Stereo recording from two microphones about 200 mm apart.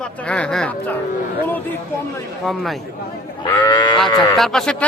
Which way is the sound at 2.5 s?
Centre (ahead or behind).